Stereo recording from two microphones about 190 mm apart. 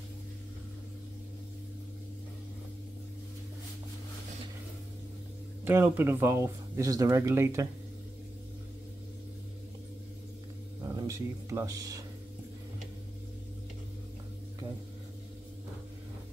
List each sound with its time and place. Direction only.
5.7 s speech: 10° right (ahead or behind)
10.9 s speech: 20° right (ahead or behind)